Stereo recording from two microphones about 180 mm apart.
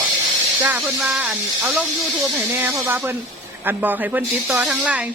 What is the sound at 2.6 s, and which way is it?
Speech, 10° right (ahead or behind).